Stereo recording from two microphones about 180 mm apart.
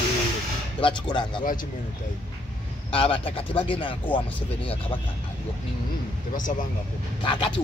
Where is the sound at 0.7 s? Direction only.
25° left (ahead or behind).